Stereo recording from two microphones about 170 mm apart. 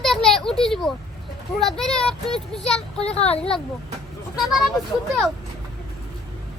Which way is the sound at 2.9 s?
35° left (ahead or behind).